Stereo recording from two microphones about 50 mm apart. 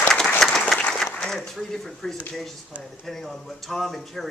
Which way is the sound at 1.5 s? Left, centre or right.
Centre.